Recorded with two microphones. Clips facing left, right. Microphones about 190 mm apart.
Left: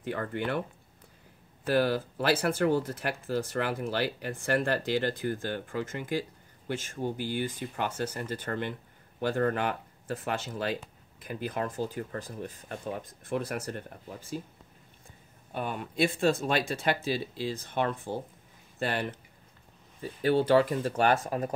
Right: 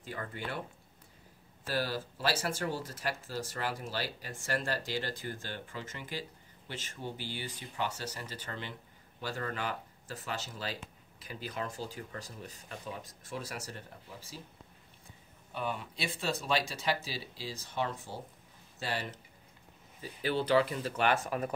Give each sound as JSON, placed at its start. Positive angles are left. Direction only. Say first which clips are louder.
{"t": 0.0, "sound": "speech", "louder": "left 8 dB", "side_deg": 60}
{"t": 1.6, "sound": "speech", "louder": "left 8 dB", "side_deg": 55}
{"t": 15.5, "sound": "speech", "louder": "left 4 dB", "side_deg": 50}